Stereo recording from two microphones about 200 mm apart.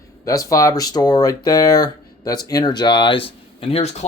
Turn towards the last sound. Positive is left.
turn(degrees=30)  # may be behind; listen again after turning